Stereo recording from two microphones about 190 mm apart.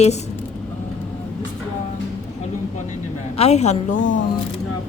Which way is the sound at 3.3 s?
35° left (ahead or behind).